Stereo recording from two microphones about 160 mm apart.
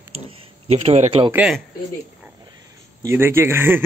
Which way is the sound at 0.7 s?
40° right (ahead or behind).